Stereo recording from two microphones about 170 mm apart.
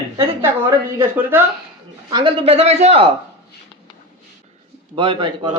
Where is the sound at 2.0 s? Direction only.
25° right (ahead or behind).